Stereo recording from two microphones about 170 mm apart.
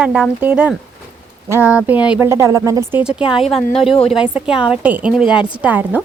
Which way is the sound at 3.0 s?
5° right (ahead or behind).